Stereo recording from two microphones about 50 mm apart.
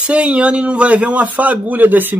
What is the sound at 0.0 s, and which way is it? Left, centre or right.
A man's voice, right.